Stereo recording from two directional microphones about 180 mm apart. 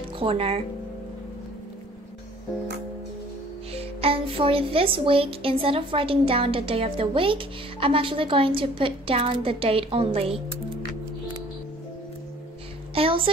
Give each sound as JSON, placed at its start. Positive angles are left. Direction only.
{"t": 0.2, "sound": "speech", "side_deg": -30}
{"t": 3.7, "sound": "speech", "side_deg": -30}
{"t": 12.9, "sound": "a woman's voice", "side_deg": -30}